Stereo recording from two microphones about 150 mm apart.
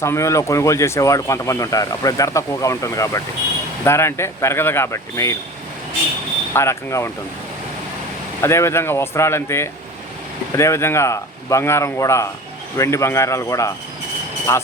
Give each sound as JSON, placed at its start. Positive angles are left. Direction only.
{"t": 0.0, "sound": "speech", "side_deg": 20}
{"t": 6.5, "sound": "speech", "side_deg": 15}
{"t": 8.4, "sound": "speech", "side_deg": 20}